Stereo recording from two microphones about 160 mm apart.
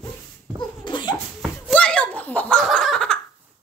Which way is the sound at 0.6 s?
30° left (ahead or behind).